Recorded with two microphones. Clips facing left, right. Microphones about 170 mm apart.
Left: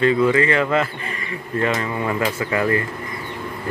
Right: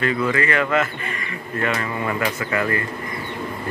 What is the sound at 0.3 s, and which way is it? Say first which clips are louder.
Speech: left 3 dB; 30° left (ahead or behind).